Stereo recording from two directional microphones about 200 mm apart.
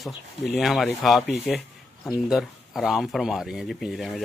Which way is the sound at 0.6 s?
Centre (ahead or behind).